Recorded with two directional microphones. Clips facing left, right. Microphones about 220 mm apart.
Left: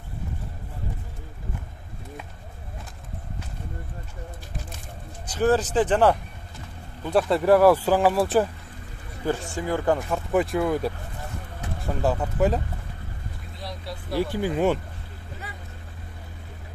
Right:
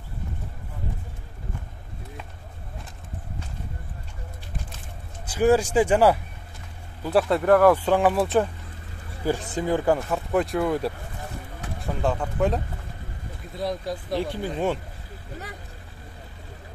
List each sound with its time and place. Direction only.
5.2 s speech: 10° right (ahead or behind)
9.2 s speech: 15° right (ahead or behind)
9.8 s speech: centre (ahead or behind)
14.2 s speech: 5° left (ahead or behind)